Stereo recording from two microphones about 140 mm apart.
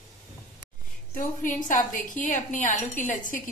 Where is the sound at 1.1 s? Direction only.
70° left (ahead or behind).